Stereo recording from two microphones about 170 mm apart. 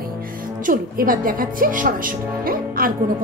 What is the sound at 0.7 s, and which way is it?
A woman's voice, 55° right (ahead or behind).